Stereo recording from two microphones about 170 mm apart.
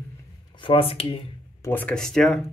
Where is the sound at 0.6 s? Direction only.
30° left (ahead or behind).